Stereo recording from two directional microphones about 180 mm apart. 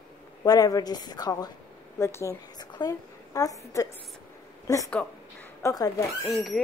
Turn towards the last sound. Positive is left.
turn(degrees=20)  # may be behind; listen again after turning